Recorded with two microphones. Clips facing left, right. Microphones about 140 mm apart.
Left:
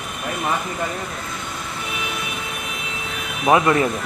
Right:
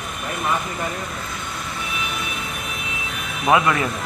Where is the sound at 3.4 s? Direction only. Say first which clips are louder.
Left 2 dB; 30° left (ahead or behind).